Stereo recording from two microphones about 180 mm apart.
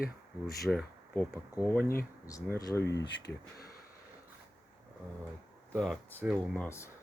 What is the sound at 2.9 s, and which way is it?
Speech, 70° left (ahead or behind).